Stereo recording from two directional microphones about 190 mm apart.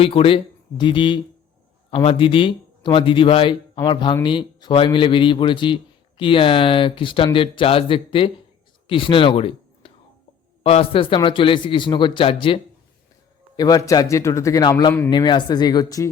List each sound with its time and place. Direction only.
0.0 s a man's voice: 30° left (ahead or behind)
13.6 s a man's voice: 20° left (ahead or behind)